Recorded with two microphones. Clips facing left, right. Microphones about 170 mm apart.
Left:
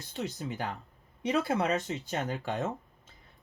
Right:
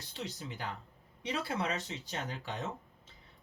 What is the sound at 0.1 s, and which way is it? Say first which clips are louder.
Speech: left 7 dB; 50° left (ahead or behind).